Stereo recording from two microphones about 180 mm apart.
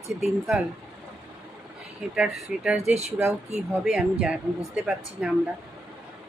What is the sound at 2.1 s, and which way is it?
Speech, 5° right (ahead or behind).